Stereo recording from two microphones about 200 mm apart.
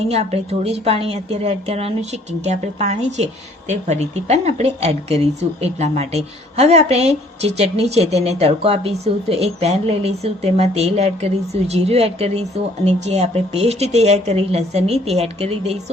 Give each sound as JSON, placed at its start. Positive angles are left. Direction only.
{"t": 0.1, "sound": "a woman's voice", "side_deg": -30}